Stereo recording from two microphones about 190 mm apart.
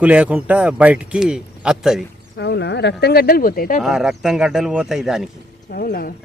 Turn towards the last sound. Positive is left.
turn(degrees=50)  # may be behind; listen again after turning